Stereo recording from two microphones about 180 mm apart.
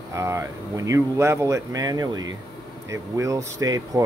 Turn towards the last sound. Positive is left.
turn(degrees=-20)  # may be behind; listen again after turning